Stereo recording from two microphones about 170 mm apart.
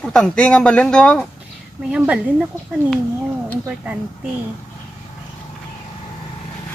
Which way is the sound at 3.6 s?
5° right (ahead or behind).